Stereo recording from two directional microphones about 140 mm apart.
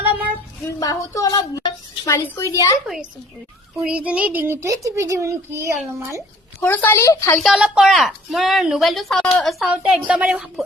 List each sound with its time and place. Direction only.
0.8 s speech: 25° left (ahead or behind)
2.8 s a woman's voice: 5° right (ahead or behind)
6.6 s speech: 15° left (ahead or behind)
7.3 s a woman's voice: centre (ahead or behind)